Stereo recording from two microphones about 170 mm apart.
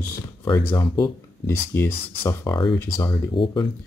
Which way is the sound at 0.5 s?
15° left (ahead or behind).